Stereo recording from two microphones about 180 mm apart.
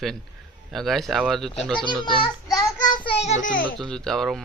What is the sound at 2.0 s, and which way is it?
Child singing, 25° left (ahead or behind).